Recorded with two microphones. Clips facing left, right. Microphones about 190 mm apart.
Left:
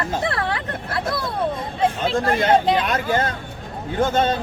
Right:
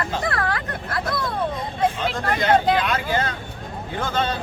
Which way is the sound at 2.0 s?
30° left (ahead or behind).